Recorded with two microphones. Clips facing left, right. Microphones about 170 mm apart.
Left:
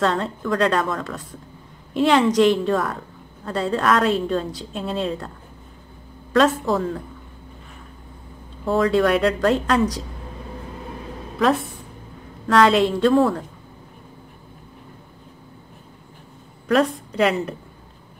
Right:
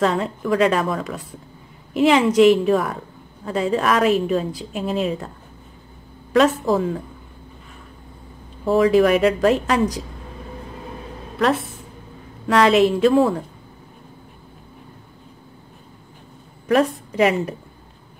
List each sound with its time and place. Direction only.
0.0 s a woman's voice: 5° right (ahead or behind)
6.3 s a woman's voice: 5° right (ahead or behind)
8.6 s a woman's voice: 5° right (ahead or behind)
11.3 s a woman's voice: centre (ahead or behind)
16.6 s a woman's voice: centre (ahead or behind)